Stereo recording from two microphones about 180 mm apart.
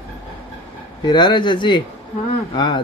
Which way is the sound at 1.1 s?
25° left (ahead or behind).